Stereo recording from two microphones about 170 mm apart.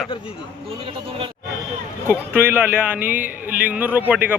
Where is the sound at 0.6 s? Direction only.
35° right (ahead or behind).